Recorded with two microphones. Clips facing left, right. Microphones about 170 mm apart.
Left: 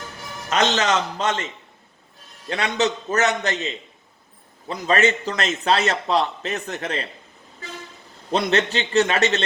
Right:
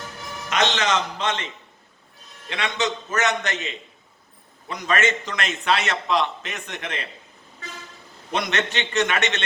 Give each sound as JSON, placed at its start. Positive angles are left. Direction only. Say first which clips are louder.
{"t": 0.5, "sound": "a man's voice", "louder": "left 2 dB", "side_deg": 40}
{"t": 2.5, "sound": "speech", "louder": "left 4 dB", "side_deg": 35}
{"t": 8.3, "sound": "speech", "louder": "left 5 dB", "side_deg": 35}